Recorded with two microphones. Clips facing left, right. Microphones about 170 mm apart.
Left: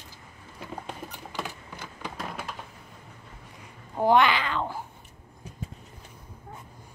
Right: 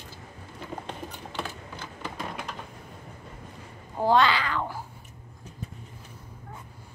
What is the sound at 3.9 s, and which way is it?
Babbling, 15° left (ahead or behind).